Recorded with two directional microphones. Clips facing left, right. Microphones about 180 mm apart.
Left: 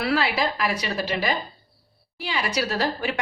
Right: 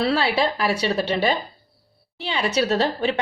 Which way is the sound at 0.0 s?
30° right (ahead or behind).